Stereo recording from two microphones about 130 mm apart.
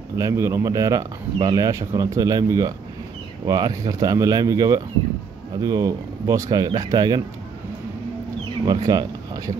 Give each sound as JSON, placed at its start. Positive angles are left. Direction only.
{"t": 0.1, "sound": "speech", "side_deg": -25}
{"t": 8.6, "sound": "speech", "side_deg": -35}